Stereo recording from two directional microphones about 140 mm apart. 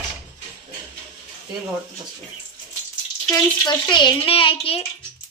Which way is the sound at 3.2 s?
30° left (ahead or behind).